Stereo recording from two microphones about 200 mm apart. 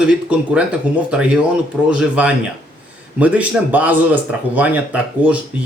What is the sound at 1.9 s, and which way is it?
A man's voice, 5° right (ahead or behind).